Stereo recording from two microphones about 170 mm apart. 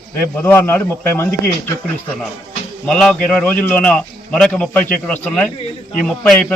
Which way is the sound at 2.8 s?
5° left (ahead or behind).